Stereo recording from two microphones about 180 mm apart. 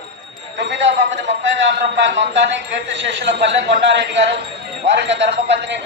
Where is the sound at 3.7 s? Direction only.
75° right (ahead or behind).